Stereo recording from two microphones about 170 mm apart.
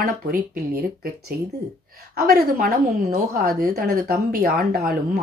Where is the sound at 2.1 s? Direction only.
65° right (ahead or behind).